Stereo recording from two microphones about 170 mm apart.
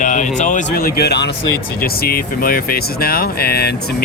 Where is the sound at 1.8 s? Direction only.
60° left (ahead or behind).